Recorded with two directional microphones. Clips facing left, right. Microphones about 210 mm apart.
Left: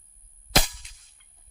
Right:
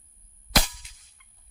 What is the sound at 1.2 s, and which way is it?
Chicken, 30° left (ahead or behind).